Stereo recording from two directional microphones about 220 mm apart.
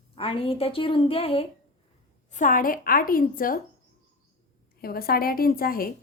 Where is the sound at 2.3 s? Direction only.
35° left (ahead or behind).